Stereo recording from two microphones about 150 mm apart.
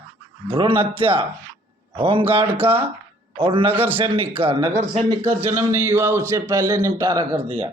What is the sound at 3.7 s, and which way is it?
Speech, 10° right (ahead or behind).